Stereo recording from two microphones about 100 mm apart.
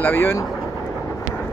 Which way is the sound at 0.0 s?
20° left (ahead or behind).